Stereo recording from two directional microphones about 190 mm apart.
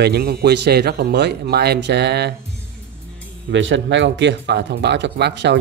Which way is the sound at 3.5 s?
75° right (ahead or behind).